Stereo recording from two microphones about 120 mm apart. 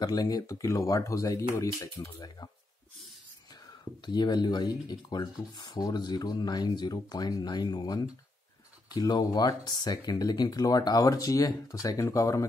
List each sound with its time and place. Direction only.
0.0 s speech: 30° left (ahead or behind)
4.0 s speech: 35° left (ahead or behind)